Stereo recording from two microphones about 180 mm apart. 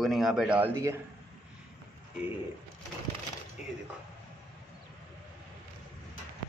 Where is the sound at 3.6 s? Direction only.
5° right (ahead or behind).